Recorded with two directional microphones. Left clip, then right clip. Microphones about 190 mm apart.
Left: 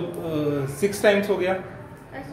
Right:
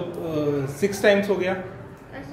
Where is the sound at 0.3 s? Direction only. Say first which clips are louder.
Right 1 dB; 10° right (ahead or behind).